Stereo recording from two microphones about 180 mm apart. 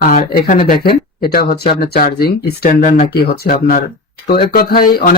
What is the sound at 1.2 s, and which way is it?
Speech, 60° left (ahead or behind).